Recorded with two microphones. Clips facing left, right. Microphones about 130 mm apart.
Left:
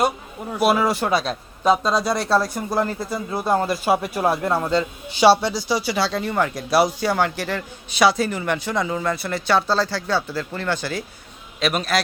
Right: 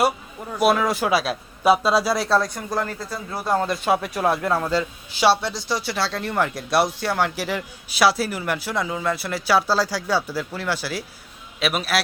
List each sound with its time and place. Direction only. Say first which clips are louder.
0.6 s a man's voice: even; centre (ahead or behind)
2.6 s speech: left 4 dB; 15° left (ahead or behind)
3.7 s a man's voice: left 1 dB; 5° left (ahead or behind)